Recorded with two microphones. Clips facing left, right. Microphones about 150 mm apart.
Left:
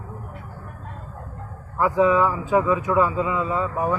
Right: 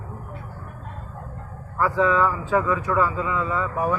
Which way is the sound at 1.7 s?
15° left (ahead or behind).